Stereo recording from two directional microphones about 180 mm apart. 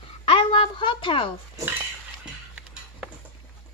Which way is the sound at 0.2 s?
30° left (ahead or behind).